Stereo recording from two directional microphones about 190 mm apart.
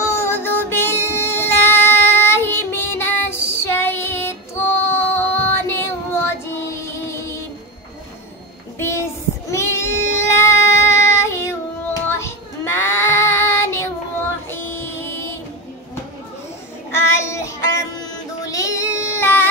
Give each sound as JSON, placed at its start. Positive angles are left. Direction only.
{"t": 0.0, "sound": "child singing", "side_deg": 15}
{"t": 8.7, "sound": "child singing", "side_deg": 15}
{"t": 14.5, "sound": "music", "side_deg": 10}
{"t": 16.9, "sound": "child singing", "side_deg": 15}